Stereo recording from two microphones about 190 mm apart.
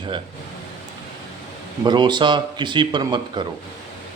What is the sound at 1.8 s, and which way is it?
Speech, 25° right (ahead or behind).